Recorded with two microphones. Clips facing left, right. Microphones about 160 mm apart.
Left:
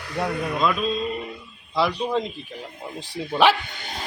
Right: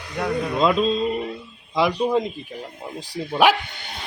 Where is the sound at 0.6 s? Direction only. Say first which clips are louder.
Right 5 dB; 25° right (ahead or behind).